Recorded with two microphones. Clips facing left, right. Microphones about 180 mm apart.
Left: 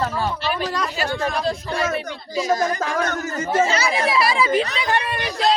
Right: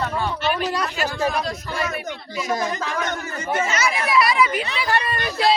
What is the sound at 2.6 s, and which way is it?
Speech, 45° left (ahead or behind).